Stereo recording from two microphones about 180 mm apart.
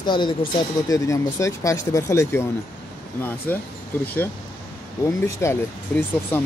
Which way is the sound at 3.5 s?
10° left (ahead or behind).